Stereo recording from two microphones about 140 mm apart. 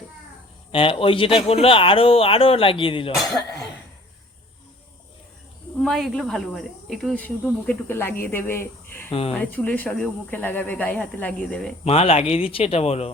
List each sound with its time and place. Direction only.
0.7 s speech: 40° left (ahead or behind)
3.2 s speech: centre (ahead or behind)
5.8 s speech: centre (ahead or behind)
7.7 s speech: 15° left (ahead or behind)
11.9 s speech: 45° left (ahead or behind)